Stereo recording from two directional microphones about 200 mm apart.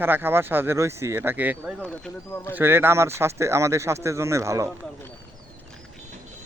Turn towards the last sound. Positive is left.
turn(degrees=-15)  # may be behind; listen again after turning